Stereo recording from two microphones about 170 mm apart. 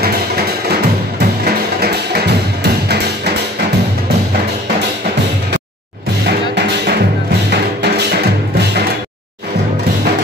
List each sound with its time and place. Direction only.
1.2 s music: 70° right (ahead or behind)
6.2 s music: 75° right (ahead or behind)